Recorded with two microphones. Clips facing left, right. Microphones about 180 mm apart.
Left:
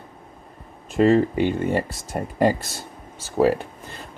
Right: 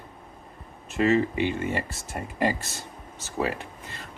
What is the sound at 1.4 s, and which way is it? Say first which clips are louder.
Speech: left 5 dB; 40° left (ahead or behind).